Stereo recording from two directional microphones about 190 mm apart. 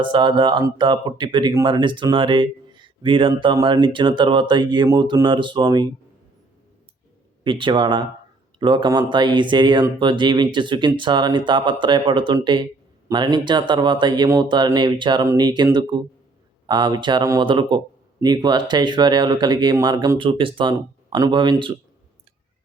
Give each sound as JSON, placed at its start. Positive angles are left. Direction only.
{"t": 0.0, "sound": "speech", "side_deg": -25}
{"t": 7.4, "sound": "speech", "side_deg": -25}